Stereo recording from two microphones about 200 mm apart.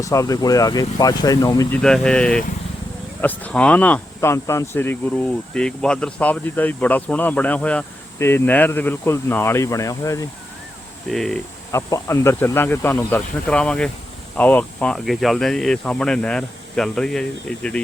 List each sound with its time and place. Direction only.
0.0 s speech: 15° left (ahead or behind)
1.8 s speech: 5° left (ahead or behind)
11.1 s speech: centre (ahead or behind)
11.7 s speech: 15° left (ahead or behind)